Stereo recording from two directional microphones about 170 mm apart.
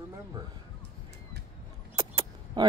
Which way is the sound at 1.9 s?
25° right (ahead or behind).